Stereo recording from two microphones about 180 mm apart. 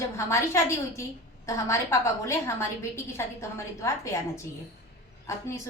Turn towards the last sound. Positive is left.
turn(degrees=15)  # may be behind; listen again after turning